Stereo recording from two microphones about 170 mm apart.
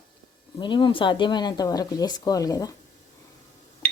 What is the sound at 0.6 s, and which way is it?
A woman's voice, 30° left (ahead or behind).